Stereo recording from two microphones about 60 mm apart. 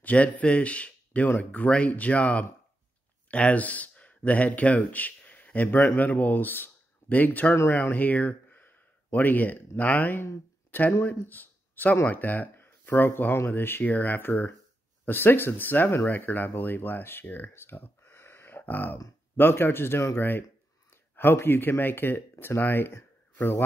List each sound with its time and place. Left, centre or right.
0.0 s a man's voice: left
7.5 s speech: left
7.9 s speech: left
17.5 s a sound: left
19.3 s a man's voice: left